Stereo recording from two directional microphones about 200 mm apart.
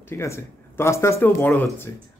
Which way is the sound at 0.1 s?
15° left (ahead or behind).